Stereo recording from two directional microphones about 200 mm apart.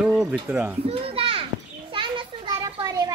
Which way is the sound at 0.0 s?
5° right (ahead or behind).